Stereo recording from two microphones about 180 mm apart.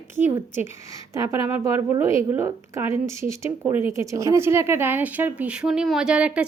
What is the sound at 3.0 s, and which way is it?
Speech, 15° right (ahead or behind).